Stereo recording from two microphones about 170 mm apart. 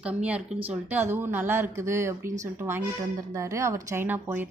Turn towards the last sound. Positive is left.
turn(degrees=-10)  # may be behind; listen again after turning